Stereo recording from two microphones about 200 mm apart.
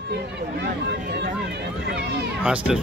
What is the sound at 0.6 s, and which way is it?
Speech, 55° right (ahead or behind).